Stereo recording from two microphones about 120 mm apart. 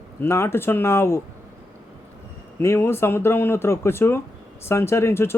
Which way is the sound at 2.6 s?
20° left (ahead or behind).